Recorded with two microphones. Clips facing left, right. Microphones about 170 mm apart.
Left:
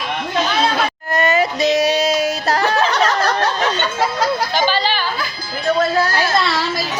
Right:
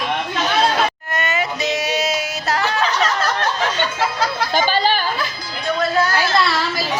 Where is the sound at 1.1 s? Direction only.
35° left (ahead or behind).